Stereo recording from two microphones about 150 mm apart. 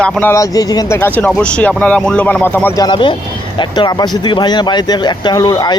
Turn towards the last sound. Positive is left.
turn(degrees=30)  # may be behind; listen again after turning